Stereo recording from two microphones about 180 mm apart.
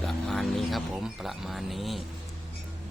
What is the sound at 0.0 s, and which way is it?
Speech, 5° left (ahead or behind).